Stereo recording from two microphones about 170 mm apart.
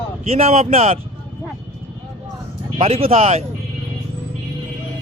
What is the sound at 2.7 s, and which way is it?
Speech, 35° right (ahead or behind).